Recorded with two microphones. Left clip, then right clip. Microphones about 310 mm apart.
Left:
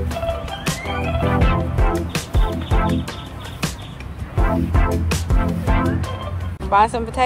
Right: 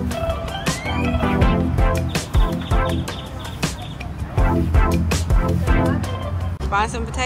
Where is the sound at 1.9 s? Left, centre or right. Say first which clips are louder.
Even; centre.